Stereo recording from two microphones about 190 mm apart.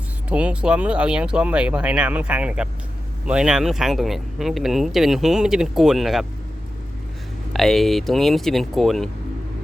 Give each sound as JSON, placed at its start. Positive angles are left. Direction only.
{"t": 0.3, "sound": "speech", "side_deg": -5}
{"t": 7.5, "sound": "speech", "side_deg": 0}